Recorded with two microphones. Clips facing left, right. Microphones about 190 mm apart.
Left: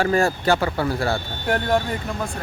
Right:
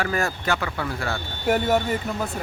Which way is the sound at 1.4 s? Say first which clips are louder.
Right 1 dB; 5° right (ahead or behind).